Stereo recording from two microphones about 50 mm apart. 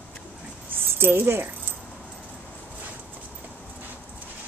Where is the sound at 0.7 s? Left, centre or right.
Right.